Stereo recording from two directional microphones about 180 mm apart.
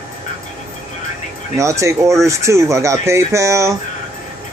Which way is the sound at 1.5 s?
15° right (ahead or behind).